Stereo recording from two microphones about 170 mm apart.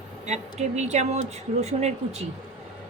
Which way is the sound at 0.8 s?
40° right (ahead or behind).